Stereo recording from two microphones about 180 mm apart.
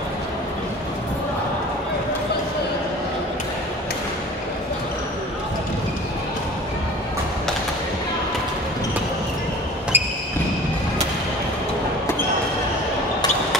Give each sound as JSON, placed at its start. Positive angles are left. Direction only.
{"t": 9.9, "sound": "basketball bounce", "side_deg": -10}